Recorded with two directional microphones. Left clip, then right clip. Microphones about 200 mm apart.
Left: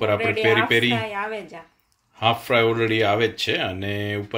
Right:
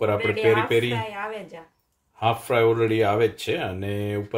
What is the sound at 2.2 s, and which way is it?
Speech, 5° right (ahead or behind).